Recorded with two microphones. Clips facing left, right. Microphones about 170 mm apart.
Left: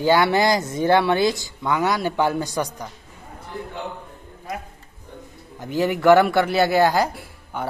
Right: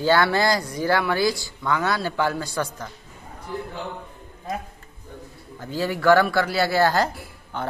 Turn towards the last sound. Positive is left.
turn(degrees=10)  # may be behind; listen again after turning